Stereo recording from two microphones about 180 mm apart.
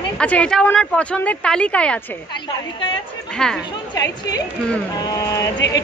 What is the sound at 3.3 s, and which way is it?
Speech, 5° left (ahead or behind).